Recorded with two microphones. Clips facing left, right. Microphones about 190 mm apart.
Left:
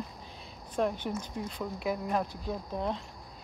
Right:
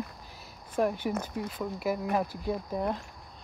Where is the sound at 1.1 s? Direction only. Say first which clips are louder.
Right 3 dB; 60° right (ahead or behind).